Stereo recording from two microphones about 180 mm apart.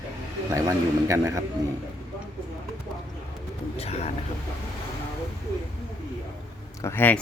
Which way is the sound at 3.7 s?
35° left (ahead or behind).